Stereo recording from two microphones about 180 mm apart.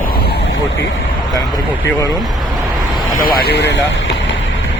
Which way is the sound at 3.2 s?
60° left (ahead or behind).